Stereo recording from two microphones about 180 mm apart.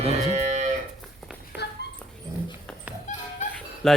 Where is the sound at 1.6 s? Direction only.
70° left (ahead or behind).